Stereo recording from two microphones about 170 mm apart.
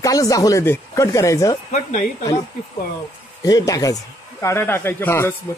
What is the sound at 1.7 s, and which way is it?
Speech, 45° left (ahead or behind).